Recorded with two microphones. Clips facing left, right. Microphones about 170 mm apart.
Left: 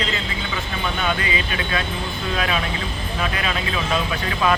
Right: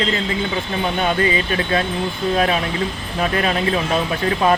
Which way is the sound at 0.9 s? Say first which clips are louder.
Right 6 dB; 45° right (ahead or behind).